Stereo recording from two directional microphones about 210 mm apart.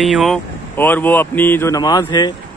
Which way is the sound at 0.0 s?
Centre (ahead or behind).